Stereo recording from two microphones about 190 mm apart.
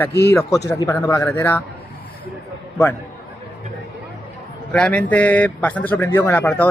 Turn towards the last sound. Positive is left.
turn(degrees=10)  # may be behind; listen again after turning